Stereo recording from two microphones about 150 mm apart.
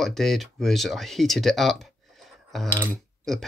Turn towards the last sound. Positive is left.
turn(degrees=0)  # may be behind; listen again after turning